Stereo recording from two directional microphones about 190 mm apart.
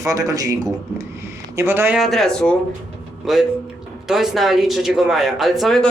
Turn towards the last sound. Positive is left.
turn(degrees=0)  # may be behind; listen again after turning